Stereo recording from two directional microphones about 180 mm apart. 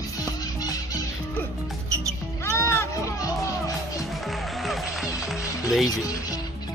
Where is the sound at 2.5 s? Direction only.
15° left (ahead or behind).